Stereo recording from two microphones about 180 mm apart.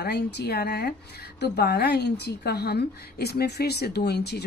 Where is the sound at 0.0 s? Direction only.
65° left (ahead or behind).